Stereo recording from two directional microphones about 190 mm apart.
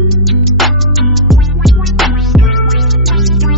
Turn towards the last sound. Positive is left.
turn(degrees=0)  # may be behind; listen again after turning